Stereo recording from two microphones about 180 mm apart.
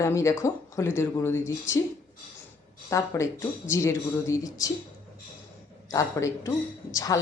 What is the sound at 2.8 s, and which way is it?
A woman's voice, 15° left (ahead or behind).